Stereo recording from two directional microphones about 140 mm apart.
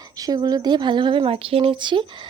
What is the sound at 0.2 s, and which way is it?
Speech, 25° right (ahead or behind).